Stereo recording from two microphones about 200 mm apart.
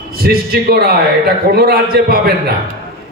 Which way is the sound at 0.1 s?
50° right (ahead or behind).